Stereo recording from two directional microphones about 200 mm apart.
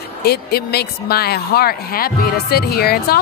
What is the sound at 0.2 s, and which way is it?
A woman's voice, 50° left (ahead or behind).